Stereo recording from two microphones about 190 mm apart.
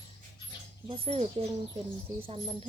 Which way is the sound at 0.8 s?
30° right (ahead or behind).